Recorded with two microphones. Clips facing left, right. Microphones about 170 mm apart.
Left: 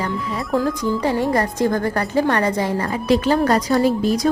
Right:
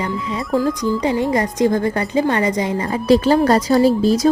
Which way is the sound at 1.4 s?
20° right (ahead or behind).